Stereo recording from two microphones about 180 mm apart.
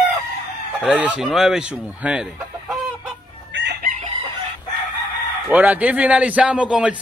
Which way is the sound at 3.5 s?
90° right.